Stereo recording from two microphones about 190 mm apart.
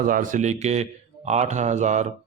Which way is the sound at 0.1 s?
45° right (ahead or behind).